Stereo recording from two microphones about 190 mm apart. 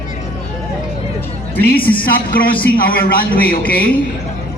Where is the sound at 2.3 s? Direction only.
50° left (ahead or behind).